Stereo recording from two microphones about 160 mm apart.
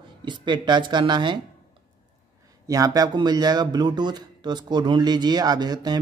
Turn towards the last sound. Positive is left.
turn(degrees=-25)  # may be behind; listen again after turning